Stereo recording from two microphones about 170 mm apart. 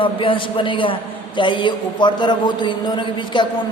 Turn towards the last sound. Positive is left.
turn(degrees=25)  # may be behind; listen again after turning